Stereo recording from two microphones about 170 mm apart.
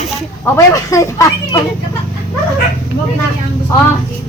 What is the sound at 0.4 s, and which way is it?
Speech, 15° left (ahead or behind).